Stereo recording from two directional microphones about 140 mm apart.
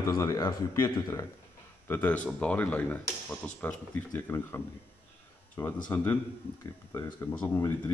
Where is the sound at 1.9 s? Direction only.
10° left (ahead or behind).